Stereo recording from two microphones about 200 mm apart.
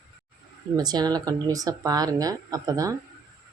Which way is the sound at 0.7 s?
20° right (ahead or behind).